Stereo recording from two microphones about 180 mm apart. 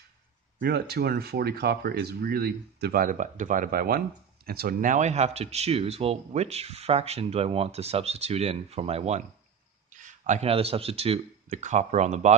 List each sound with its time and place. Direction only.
0.6 s speech: 60° right (ahead or behind); by 12.3 s 40° right (ahead or behind)